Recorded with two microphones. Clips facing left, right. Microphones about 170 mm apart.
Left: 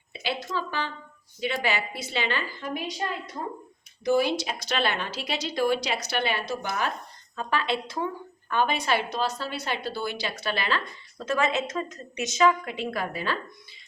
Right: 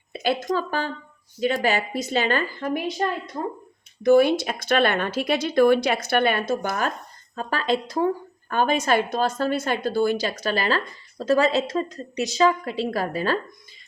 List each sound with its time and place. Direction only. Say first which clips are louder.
0.1 s a woman's voice: right 7 dB; 50° right (ahead or behind)
4.0 s a woman's voice: right 7 dB; 55° right (ahead or behind); by 13.4 s 40° right (ahead or behind)